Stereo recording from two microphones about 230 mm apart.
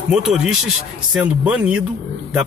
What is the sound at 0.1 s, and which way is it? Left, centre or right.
Speech, centre.